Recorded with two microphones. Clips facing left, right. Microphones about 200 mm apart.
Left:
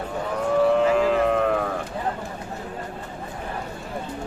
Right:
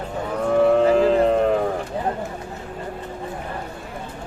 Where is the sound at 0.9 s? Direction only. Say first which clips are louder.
Right 3 dB; 30° right (ahead or behind).